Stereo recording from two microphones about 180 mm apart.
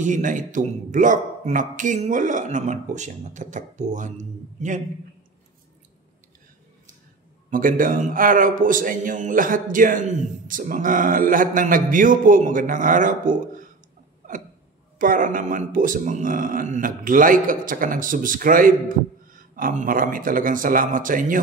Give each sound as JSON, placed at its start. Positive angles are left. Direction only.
{"t": 0.0, "sound": "speech", "side_deg": -45}
{"t": 7.5, "sound": "speech", "side_deg": -50}
{"t": 15.0, "sound": "speech", "side_deg": -50}